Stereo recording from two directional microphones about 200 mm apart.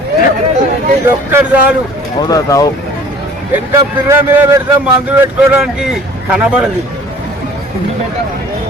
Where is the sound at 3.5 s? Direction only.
15° right (ahead or behind).